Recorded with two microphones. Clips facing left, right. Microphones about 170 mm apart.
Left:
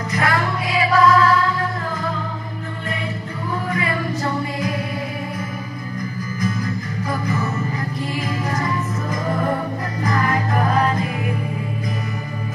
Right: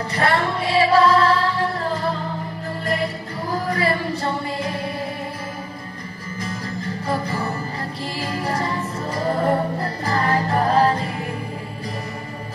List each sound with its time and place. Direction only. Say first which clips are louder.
0.1 s music: even; 30° right (ahead or behind)
3.6 s music: right 2 dB; 35° right (ahead or behind)
7.1 s music: left 1 dB; 30° right (ahead or behind)